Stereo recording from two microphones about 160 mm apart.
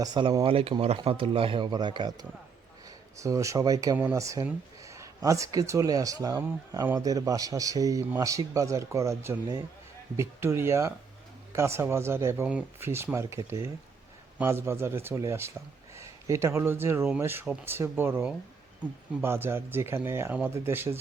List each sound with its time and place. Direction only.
0.0 s speech: 30° right (ahead or behind)
3.9 s speech: 10° right (ahead or behind)
4.2 s speech: 20° right (ahead or behind)